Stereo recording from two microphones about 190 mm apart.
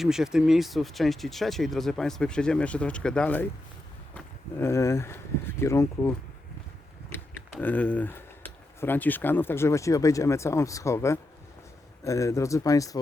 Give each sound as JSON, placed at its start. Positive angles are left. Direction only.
{"t": 0.0, "sound": "speech", "side_deg": 0}